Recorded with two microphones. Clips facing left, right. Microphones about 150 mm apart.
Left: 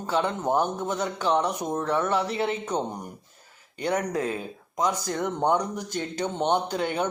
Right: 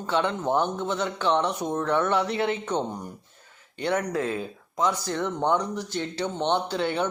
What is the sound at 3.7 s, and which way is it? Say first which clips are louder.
Speech: even; 40° left (ahead or behind).